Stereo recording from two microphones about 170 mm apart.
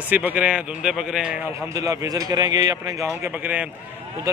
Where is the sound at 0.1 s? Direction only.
10° right (ahead or behind).